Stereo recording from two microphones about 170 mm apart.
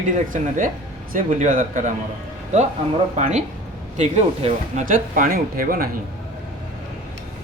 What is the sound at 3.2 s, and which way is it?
Speech, 45° right (ahead or behind).